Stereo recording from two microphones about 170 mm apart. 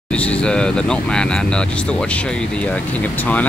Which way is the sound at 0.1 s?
5° left (ahead or behind).